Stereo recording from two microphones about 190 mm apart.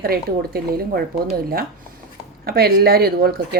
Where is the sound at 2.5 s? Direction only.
55° right (ahead or behind).